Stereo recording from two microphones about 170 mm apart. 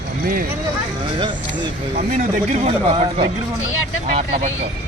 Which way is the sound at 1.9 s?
45° right (ahead or behind).